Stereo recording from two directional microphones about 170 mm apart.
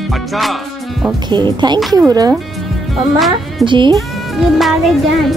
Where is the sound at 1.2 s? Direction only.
25° right (ahead or behind).